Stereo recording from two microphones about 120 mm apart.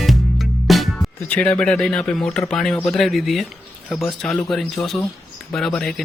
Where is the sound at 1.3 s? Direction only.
10° left (ahead or behind).